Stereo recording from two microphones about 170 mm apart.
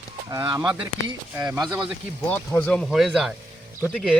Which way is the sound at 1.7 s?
5° right (ahead or behind).